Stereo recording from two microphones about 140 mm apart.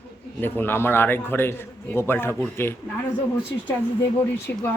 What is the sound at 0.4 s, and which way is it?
Speech, 15° left (ahead or behind).